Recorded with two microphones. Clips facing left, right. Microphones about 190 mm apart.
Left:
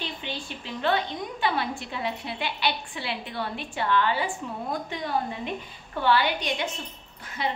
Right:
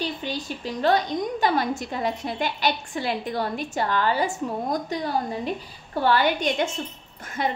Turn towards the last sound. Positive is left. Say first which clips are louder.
# right 3 dB
turn(degrees=-45)  # may be behind; listen again after turning